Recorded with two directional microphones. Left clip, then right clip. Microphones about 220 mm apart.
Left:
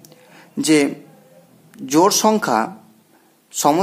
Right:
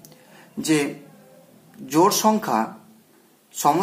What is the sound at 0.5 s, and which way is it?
Speech, 40° left (ahead or behind).